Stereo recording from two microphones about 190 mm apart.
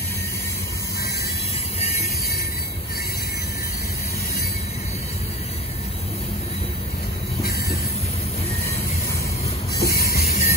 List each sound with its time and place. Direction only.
1.8 s music: 35° left (ahead or behind)
9.8 s music: 55° left (ahead or behind)
10.2 s music: 35° left (ahead or behind)